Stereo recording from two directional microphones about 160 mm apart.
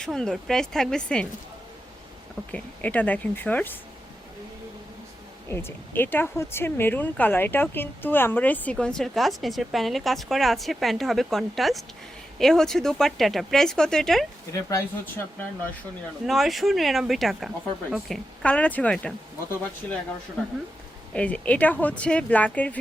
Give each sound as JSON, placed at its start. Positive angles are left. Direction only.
{"t": 0.0, "sound": "speech", "side_deg": 5}
{"t": 2.5, "sound": "speech", "side_deg": 10}
{"t": 5.5, "sound": "speech", "side_deg": 15}
{"t": 14.5, "sound": "speech", "side_deg": 20}
{"t": 16.2, "sound": "speech", "side_deg": 0}
{"t": 21.1, "sound": "speech", "side_deg": 5}